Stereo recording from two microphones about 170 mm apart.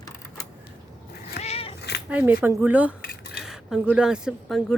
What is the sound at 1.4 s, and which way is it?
Cat, 35° left (ahead or behind).